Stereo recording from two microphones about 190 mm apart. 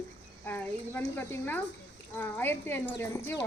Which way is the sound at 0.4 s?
10° left (ahead or behind).